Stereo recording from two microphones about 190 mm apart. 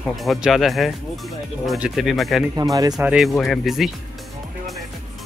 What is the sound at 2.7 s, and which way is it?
Speech, 20° right (ahead or behind).